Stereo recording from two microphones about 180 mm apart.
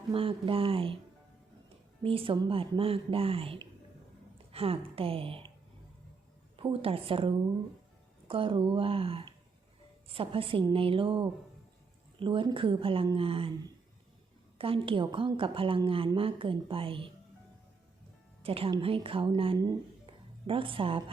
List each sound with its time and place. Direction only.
0.1 s speech: 30° right (ahead or behind)
2.0 s speech: 30° right (ahead or behind)
6.6 s a woman's voice: 30° right (ahead or behind)
14.6 s a woman's voice: 30° right (ahead or behind)
18.4 s a woman's voice: 30° right (ahead or behind)